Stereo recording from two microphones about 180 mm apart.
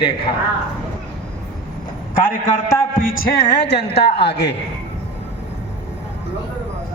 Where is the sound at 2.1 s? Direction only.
50° left (ahead or behind).